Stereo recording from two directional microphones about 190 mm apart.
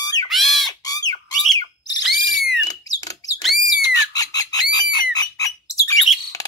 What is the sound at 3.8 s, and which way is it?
Squawk, 20° left (ahead or behind).